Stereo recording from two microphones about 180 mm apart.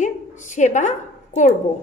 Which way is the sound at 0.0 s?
45° left (ahead or behind).